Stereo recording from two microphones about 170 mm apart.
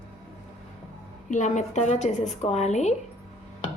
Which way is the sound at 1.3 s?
45° left (ahead or behind).